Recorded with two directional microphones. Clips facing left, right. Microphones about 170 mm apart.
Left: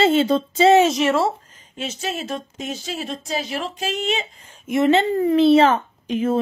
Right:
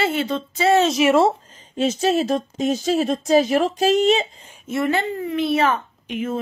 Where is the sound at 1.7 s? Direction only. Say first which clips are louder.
Right 9 dB; 40° right (ahead or behind).